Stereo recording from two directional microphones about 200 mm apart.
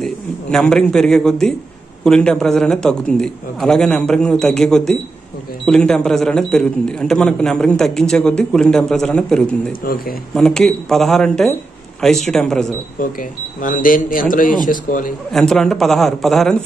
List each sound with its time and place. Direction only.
0.0 s a man's voice: 5° left (ahead or behind)
9.7 s speech: 45° left (ahead or behind)
10.3 s speech: 5° left (ahead or behind)
13.2 s speech: 40° left (ahead or behind)
15.3 s speech: centre (ahead or behind)